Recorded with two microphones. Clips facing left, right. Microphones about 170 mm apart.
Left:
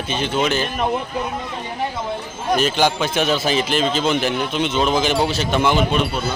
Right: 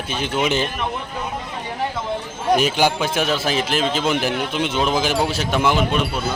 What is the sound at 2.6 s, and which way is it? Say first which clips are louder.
A man's voice: even; 10° right (ahead or behind).